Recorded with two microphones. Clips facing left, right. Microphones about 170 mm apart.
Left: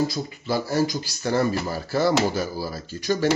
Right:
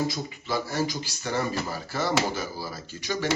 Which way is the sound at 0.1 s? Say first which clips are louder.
Left 4 dB; 35° left (ahead or behind).